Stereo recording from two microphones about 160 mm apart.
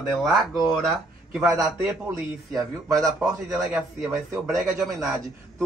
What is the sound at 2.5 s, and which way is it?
Speech, 20° right (ahead or behind).